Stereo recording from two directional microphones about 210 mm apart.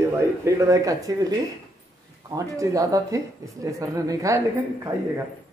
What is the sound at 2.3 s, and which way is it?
A man's voice, 15° right (ahead or behind).